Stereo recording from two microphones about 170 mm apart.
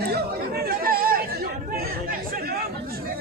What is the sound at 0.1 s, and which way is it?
Chatter, 65° right (ahead or behind).